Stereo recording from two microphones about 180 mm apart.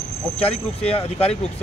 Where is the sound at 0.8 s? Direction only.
35° left (ahead or behind).